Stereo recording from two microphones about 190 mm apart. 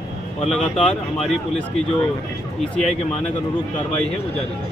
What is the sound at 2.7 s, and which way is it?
Speech, 5° left (ahead or behind).